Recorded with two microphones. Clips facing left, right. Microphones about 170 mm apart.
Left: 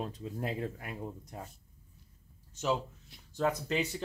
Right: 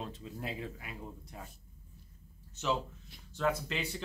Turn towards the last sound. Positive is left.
turn(degrees=40)  # may be behind; listen again after turning